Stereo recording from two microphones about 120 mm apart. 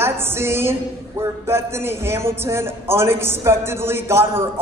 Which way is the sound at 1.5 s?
20° right (ahead or behind).